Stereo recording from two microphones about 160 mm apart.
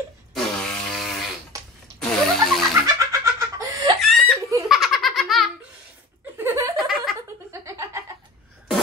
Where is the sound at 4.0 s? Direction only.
Centre (ahead or behind).